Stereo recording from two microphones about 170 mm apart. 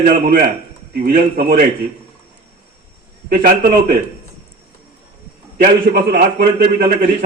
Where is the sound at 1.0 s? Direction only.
60° right (ahead or behind).